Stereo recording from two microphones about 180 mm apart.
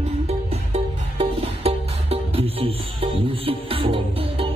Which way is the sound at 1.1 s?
35° right (ahead or behind).